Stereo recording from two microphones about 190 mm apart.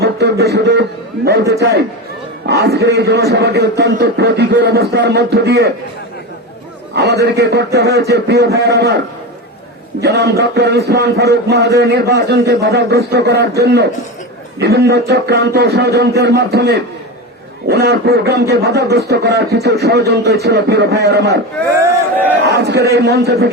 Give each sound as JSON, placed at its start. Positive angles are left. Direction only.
{"t": 0.0, "sound": "a sound", "side_deg": -60}
{"t": 0.5, "sound": "speech", "side_deg": -60}
{"t": 6.9, "sound": "speech", "side_deg": -60}
{"t": 10.0, "sound": "speech", "side_deg": -60}
{"t": 22.4, "sound": "speech", "side_deg": -60}